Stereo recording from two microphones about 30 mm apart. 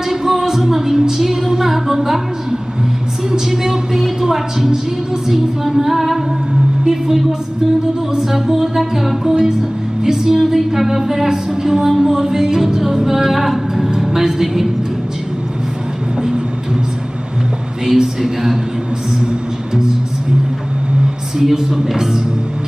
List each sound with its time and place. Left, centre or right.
0.1 s music: centre
3.3 s a woman's voice: centre
6.9 s music: centre
8.2 s speech: centre
9.3 s music: centre
10.4 s speech: centre
13.8 s music: centre
17.9 s speech: centre
21.4 s speech: centre